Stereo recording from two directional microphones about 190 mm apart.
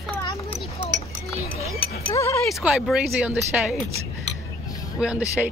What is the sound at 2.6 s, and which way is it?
Speech, 5° right (ahead or behind).